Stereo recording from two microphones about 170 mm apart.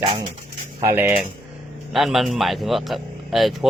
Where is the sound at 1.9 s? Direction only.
Centre (ahead or behind).